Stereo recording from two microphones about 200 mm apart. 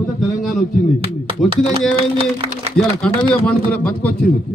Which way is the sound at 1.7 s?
30° right (ahead or behind).